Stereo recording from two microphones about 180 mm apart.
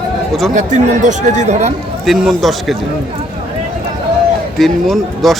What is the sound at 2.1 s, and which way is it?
Speech, centre (ahead or behind).